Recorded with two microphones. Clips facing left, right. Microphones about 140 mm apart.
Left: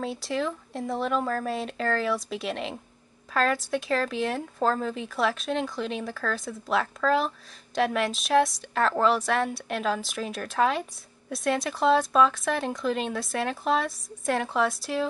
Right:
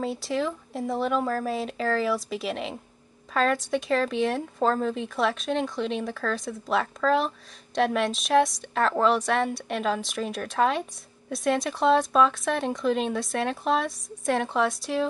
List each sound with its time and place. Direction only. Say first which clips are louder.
0.0 s speech: right 2 dB; centre (ahead or behind)